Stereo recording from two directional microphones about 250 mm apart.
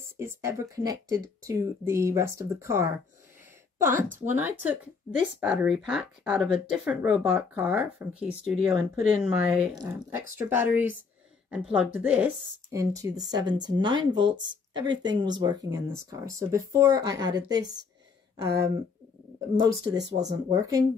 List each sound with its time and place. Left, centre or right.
0.2 s speech: centre
3.9 s speech: right
4.3 s speech: centre